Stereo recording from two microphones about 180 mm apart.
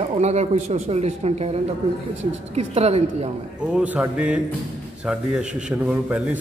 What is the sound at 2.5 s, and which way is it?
Speech, 35° right (ahead or behind).